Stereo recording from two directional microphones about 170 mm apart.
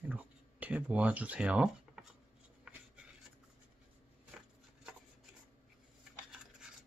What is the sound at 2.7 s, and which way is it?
Writing, 5° right (ahead or behind).